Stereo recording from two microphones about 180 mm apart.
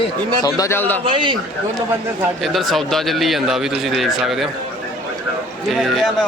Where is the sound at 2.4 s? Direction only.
Centre (ahead or behind).